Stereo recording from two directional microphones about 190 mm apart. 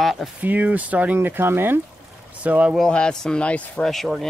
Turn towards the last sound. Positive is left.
turn(degrees=0)  # may be behind; listen again after turning